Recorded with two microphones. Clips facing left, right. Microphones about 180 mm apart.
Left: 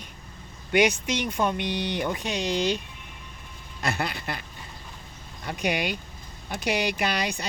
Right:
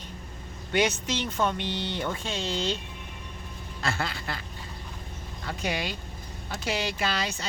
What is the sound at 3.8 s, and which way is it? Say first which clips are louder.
Speech: left 2 dB; 20° left (ahead or behind).